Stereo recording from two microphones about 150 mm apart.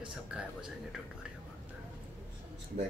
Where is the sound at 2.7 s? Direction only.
50° right (ahead or behind).